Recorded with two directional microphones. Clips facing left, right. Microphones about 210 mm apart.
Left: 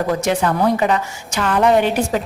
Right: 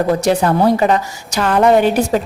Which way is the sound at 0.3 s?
35° right (ahead or behind).